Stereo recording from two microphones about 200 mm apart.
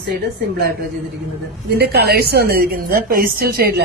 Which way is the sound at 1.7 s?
55° right (ahead or behind).